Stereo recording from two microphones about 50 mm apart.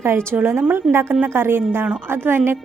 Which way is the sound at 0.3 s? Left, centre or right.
Right.